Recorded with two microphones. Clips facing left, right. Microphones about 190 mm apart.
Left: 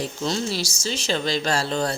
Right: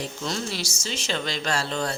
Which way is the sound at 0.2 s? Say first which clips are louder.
Left 5 dB; 35° left (ahead or behind).